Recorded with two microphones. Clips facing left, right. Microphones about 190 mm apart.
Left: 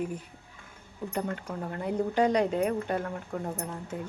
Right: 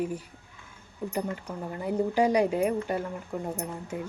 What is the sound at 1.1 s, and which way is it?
A woman's voice, 10° right (ahead or behind).